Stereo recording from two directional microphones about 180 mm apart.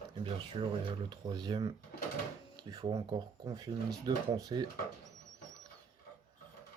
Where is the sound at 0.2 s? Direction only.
30° right (ahead or behind).